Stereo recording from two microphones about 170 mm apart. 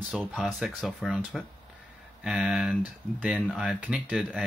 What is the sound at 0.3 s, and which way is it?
Speech, 5° right (ahead or behind).